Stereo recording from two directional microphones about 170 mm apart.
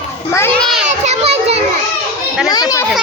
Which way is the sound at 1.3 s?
80° right.